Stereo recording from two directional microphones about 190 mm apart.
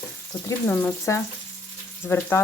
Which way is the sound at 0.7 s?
10° left (ahead or behind).